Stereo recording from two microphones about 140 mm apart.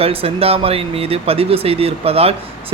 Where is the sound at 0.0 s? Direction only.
45° right (ahead or behind).